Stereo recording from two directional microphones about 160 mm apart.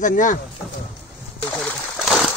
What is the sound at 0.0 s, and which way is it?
Speech, 55° left (ahead or behind).